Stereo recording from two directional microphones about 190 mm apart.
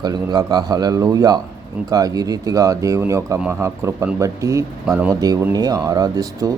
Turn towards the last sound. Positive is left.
turn(degrees=-20)  # may be behind; listen again after turning